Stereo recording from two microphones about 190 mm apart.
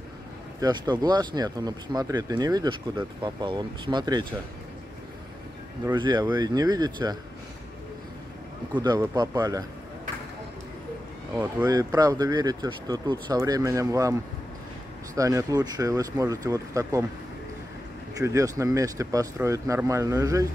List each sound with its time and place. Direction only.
0.6 s speech: 20° right (ahead or behind)
5.9 s speech: 25° right (ahead or behind)
8.7 s speech: 20° right (ahead or behind)
11.6 s speech: 20° right (ahead or behind)
15.1 s speech: 15° right (ahead or behind)
18.1 s speech: 15° right (ahead or behind)